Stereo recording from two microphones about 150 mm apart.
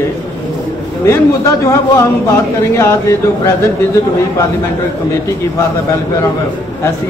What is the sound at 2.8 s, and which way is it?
Speech, 20° left (ahead or behind).